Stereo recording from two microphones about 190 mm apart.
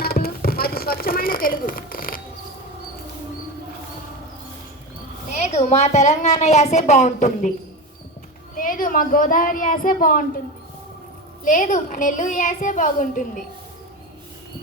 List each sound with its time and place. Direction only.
0.0 s a sound: 55° left (ahead or behind)
5.3 s a woman's voice: 40° left (ahead or behind)
8.5 s a woman's voice: 45° left (ahead or behind)
11.4 s a woman's voice: 45° left (ahead or behind)